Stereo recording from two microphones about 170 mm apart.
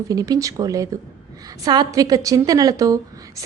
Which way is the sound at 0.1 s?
20° right (ahead or behind).